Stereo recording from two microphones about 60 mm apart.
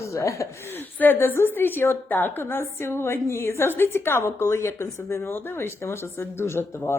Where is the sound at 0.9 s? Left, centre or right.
Left.